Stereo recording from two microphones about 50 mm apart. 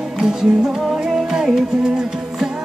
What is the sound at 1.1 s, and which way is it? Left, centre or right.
Music, centre.